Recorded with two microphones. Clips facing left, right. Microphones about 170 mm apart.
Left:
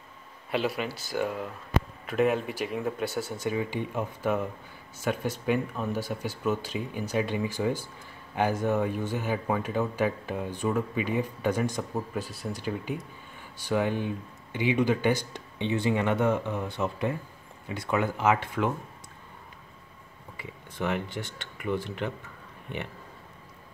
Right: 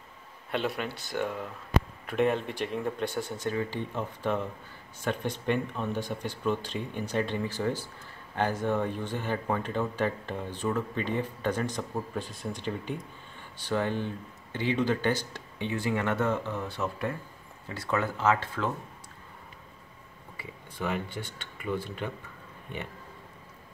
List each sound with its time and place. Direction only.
0.5 s speech: 5° left (ahead or behind)